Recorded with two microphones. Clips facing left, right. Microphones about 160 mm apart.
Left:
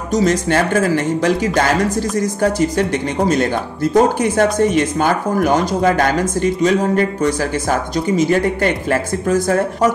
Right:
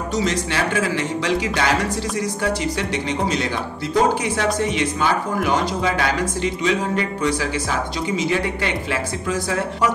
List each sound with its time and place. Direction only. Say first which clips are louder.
0.1 s speech: left 8 dB; 45° left (ahead or behind)